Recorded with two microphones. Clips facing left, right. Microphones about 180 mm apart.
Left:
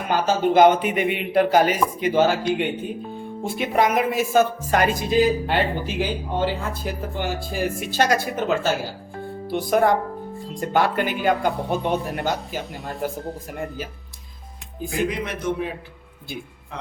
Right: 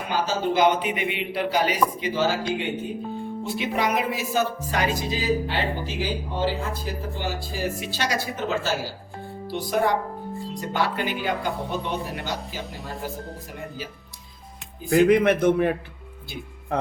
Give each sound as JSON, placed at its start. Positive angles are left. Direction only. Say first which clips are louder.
{"t": 0.1, "sound": "speech", "louder": "left 5 dB", "side_deg": 50}
{"t": 14.8, "sound": "a man's voice", "louder": "right 9 dB", "side_deg": -55}